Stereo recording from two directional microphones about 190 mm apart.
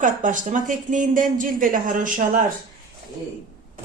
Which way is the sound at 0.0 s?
40° right (ahead or behind).